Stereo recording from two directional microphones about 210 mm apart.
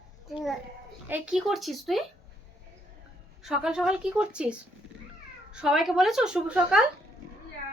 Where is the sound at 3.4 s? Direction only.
Centre (ahead or behind).